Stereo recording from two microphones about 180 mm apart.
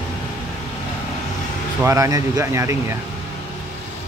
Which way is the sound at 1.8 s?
15° right (ahead or behind).